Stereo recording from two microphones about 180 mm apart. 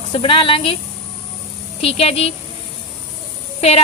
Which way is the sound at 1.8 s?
35° left (ahead or behind).